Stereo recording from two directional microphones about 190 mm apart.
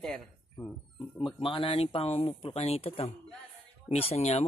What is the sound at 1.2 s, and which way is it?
Speech, 25° left (ahead or behind).